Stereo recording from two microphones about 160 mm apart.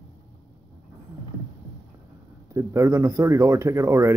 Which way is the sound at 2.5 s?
20° right (ahead or behind).